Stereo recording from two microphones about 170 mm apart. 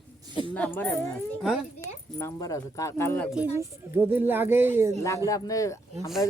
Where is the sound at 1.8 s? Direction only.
15° left (ahead or behind).